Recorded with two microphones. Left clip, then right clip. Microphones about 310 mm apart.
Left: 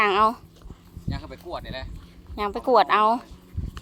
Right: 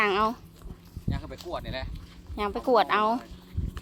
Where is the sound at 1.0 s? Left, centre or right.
Centre.